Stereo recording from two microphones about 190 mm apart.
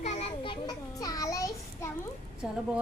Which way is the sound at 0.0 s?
35° left (ahead or behind).